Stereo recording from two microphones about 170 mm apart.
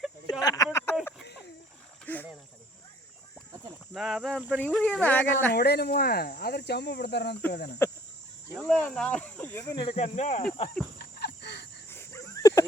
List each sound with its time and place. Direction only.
0.3 s a sound: 20° left (ahead or behind)
2.1 s wild animals: 10° left (ahead or behind)
3.9 s speech: centre (ahead or behind)
4.6 s speech: 5° left (ahead or behind)
5.5 s speech: 70° left (ahead or behind)
7.5 s speech: 70° left (ahead or behind)
8.5 s speech: 5° left (ahead or behind)
9.6 s speech: 30° left (ahead or behind)
10.0 s speech: 45° left (ahead or behind)
10.9 s a sound: 70° left (ahead or behind)
11.9 s a sound: 15° left (ahead or behind)